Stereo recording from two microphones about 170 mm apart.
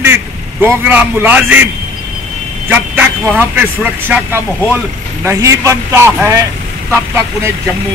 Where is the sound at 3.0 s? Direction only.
10° right (ahead or behind).